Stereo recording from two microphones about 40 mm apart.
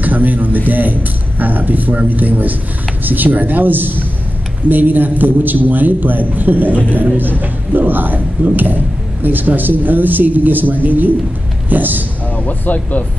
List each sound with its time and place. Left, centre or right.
0.0 s a man's voice: right
12.4 s speech: left